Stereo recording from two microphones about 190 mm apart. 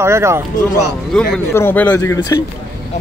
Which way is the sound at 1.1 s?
10° left (ahead or behind).